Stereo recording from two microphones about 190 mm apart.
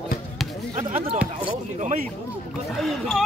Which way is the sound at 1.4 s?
40° right (ahead or behind).